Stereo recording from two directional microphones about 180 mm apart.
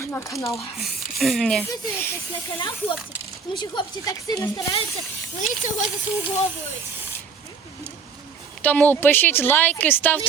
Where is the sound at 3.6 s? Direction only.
25° left (ahead or behind).